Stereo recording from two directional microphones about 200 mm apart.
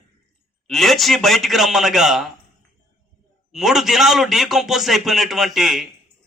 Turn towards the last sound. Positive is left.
turn(degrees=0)  # may be behind; listen again after turning